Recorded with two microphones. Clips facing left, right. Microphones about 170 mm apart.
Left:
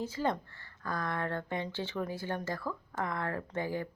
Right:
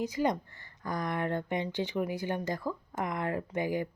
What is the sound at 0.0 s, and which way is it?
Speech, 15° right (ahead or behind).